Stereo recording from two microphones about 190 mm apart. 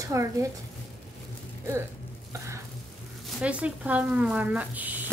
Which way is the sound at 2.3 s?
15° right (ahead or behind).